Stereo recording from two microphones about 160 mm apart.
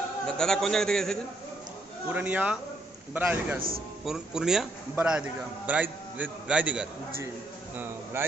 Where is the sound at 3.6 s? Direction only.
65° right (ahead or behind).